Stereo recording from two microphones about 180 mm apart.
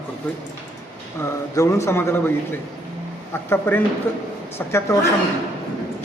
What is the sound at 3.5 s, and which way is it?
Speech, 10° left (ahead or behind).